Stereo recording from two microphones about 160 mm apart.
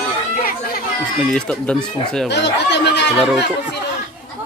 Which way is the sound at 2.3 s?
90° left.